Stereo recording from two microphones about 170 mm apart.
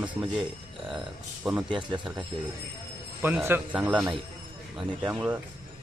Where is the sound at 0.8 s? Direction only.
Centre (ahead or behind).